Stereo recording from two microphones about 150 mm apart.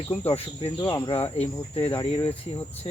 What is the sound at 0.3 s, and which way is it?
Speech, 35° left (ahead or behind).